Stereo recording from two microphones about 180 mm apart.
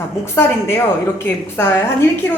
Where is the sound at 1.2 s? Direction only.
10° left (ahead or behind).